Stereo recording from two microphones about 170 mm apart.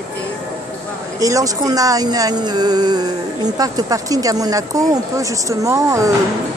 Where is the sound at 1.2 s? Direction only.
20° right (ahead or behind).